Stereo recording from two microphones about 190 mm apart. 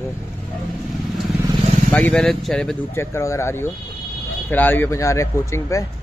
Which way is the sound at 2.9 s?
15° left (ahead or behind).